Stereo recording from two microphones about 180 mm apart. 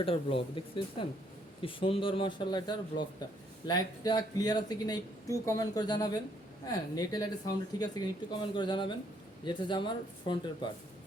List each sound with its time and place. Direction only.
0.0 s speech: 30° left (ahead or behind)